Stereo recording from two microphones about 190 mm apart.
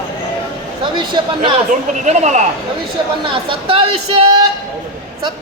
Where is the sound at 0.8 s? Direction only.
25° right (ahead or behind).